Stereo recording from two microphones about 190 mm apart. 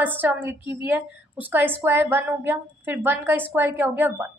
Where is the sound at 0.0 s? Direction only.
10° right (ahead or behind).